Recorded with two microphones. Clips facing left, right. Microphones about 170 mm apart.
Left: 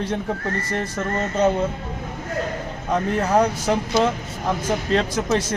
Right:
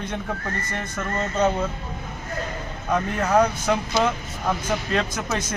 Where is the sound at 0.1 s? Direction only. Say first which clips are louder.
Left 4 dB; 30° left (ahead or behind).